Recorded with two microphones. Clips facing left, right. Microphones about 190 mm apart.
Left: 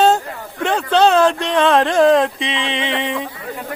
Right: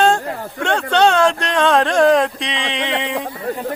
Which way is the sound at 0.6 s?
5° left (ahead or behind).